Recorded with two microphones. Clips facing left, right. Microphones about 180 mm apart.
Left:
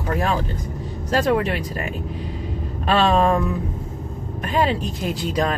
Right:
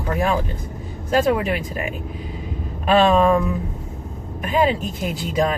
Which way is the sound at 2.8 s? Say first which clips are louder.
Right 2 dB; 5° right (ahead or behind).